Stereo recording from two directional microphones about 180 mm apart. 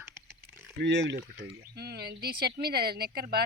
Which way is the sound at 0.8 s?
70° right (ahead or behind).